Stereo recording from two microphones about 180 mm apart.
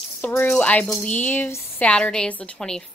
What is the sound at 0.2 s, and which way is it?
A woman's voice, 10° left (ahead or behind).